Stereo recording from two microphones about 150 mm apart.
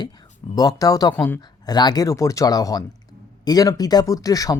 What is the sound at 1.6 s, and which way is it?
Speech, 25° left (ahead or behind).